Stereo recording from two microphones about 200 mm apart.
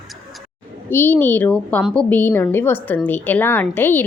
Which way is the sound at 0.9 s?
10° left (ahead or behind).